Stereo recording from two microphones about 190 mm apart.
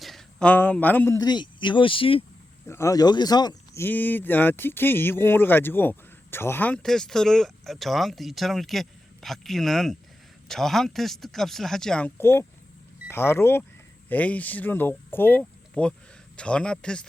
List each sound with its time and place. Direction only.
0.0 s a man's voice: centre (ahead or behind); by 2.2 s 30° left (ahead or behind)
2.6 s speech: 15° left (ahead or behind)
3.8 s speech: 10° left (ahead or behind)